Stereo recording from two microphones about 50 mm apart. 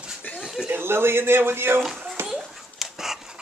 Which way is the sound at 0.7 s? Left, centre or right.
Right.